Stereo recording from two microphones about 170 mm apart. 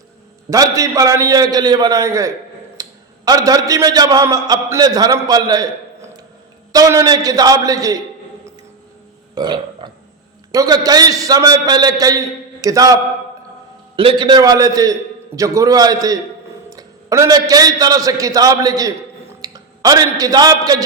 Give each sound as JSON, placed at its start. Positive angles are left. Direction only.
{"t": 0.5, "sound": "a man's voice", "side_deg": -20}
{"t": 2.8, "sound": "a sound", "side_deg": -20}
{"t": 3.2, "sound": "a man's voice", "side_deg": -20}
{"t": 6.7, "sound": "a man's voice", "side_deg": -20}
{"t": 9.3, "sound": "burping", "side_deg": -25}
{"t": 10.5, "sound": "a man's voice", "side_deg": -20}